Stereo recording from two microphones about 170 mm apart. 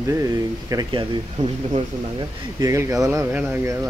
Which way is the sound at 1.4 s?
45° right (ahead or behind).